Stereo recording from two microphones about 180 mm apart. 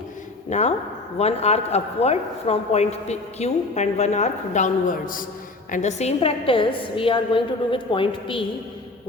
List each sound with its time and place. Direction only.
0.5 s a woman's voice: 40° left (ahead or behind)